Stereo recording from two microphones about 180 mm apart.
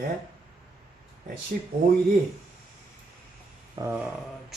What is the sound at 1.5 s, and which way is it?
Speech, 55° right (ahead or behind).